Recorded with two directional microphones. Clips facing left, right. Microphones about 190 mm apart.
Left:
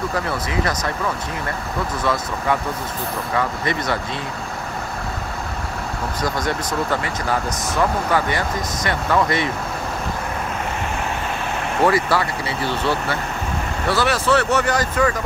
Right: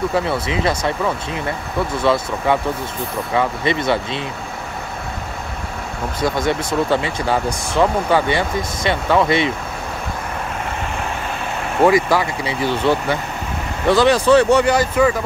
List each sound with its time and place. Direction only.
0.1 s speech: 25° right (ahead or behind)
2.0 s speech: 25° right (ahead or behind)
6.2 s speech: 25° right (ahead or behind)
11.8 s speech: 15° right (ahead or behind)